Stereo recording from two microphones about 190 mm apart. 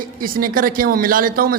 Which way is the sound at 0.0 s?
50° right (ahead or behind).